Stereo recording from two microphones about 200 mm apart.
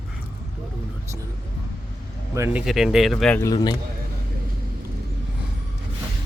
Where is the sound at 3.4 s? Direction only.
20° left (ahead or behind).